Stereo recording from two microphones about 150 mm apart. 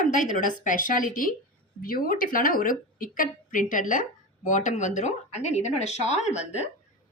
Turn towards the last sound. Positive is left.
turn(degrees=50)  # may be behind; listen again after turning